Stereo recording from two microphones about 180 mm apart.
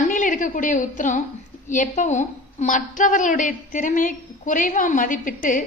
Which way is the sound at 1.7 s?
45° left (ahead or behind).